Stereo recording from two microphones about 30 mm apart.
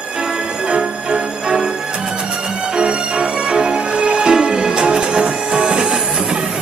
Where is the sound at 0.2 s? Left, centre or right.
Right.